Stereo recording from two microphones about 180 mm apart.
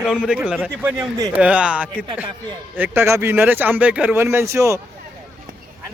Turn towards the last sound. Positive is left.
turn(degrees=-15)  # may be behind; listen again after turning